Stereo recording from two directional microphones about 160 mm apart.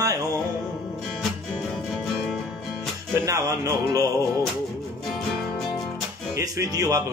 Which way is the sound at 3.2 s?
20° right (ahead or behind).